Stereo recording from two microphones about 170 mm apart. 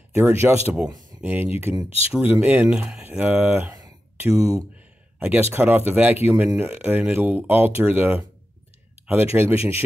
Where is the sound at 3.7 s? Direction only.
20° right (ahead or behind).